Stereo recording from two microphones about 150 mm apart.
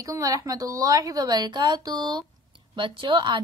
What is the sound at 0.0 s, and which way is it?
A woman's voice, 20° right (ahead or behind).